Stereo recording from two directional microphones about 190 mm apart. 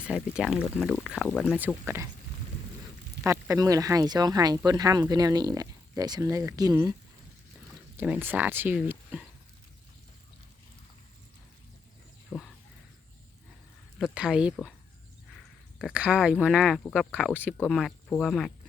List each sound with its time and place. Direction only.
0.0 s speech: 5° right (ahead or behind)
3.2 s speech: 15° right (ahead or behind)
7.9 s speech: 10° right (ahead or behind)
12.3 s a sound: 5° left (ahead or behind)
14.0 s speech: 5° right (ahead or behind)